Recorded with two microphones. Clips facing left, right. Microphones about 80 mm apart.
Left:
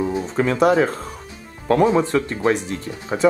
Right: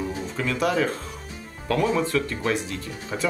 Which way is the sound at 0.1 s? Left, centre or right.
Left.